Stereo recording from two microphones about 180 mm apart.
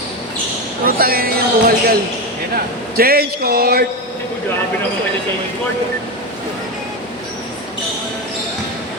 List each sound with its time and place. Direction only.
0.9 s music: 55° right (ahead or behind)
3.0 s music: 60° right (ahead or behind)